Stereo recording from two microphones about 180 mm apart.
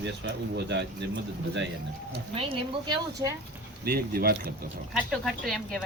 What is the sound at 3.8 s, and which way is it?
Speech, 55° right (ahead or behind).